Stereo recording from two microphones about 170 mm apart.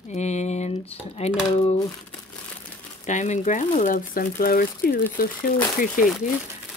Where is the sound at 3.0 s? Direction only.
45° left (ahead or behind).